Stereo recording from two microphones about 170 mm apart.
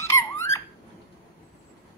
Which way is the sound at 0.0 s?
15° left (ahead or behind).